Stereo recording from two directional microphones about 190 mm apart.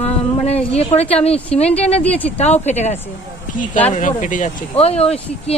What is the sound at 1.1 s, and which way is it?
Speech, 30° left (ahead or behind).